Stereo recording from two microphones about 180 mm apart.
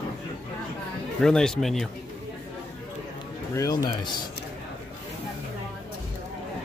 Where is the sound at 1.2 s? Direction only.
5° left (ahead or behind).